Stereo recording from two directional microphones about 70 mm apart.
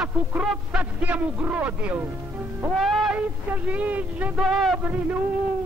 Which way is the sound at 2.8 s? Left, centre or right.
Centre.